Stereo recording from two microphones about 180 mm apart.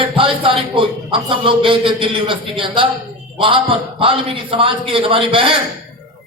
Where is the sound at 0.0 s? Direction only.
30° right (ahead or behind).